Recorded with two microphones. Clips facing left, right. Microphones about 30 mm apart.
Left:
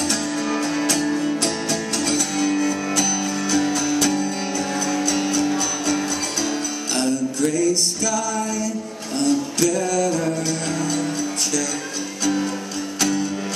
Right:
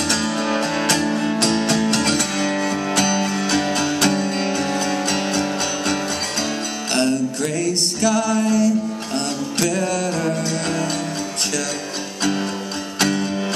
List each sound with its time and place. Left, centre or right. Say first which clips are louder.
0.1 s music: right 2 dB; right
7.0 s music: right 1 dB; right
13.0 s music: right 2 dB; right